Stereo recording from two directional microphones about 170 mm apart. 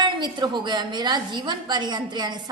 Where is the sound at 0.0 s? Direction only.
25° right (ahead or behind).